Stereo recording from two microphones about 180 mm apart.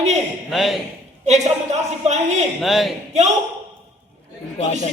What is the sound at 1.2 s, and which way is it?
A man's voice, 40° right (ahead or behind).